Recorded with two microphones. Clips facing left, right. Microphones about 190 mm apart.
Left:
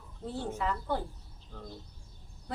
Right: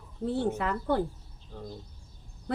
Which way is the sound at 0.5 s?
65° right (ahead or behind).